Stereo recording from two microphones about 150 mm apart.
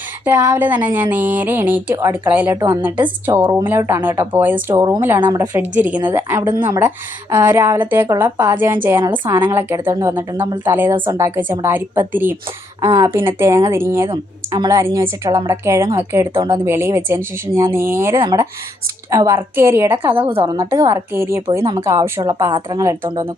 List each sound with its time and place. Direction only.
0.3 s a woman's voice: 15° right (ahead or behind)
2.6 s a woman's voice: 25° right (ahead or behind)
2.8 s a woman's voice: 10° right (ahead or behind)
4.5 s a woman's voice: 30° right (ahead or behind)
10.9 s a woman's voice: 30° right (ahead or behind)
11.2 s a woman's voice: 15° right (ahead or behind)
18.2 s a woman's voice: 30° right (ahead or behind)
19.1 s a woman's voice: 15° right (ahead or behind)
20.2 s a woman's voice: 35° right (ahead or behind)
20.6 s a woman's voice: 20° right (ahead or behind)